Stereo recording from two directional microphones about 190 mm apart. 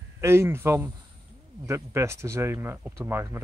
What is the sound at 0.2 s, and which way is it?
Speech, 15° right (ahead or behind).